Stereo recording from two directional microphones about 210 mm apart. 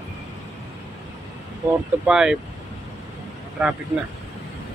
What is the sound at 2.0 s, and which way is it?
Speech, 5° right (ahead or behind).